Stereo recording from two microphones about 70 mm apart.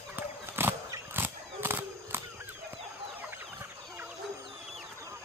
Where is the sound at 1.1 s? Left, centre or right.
Right.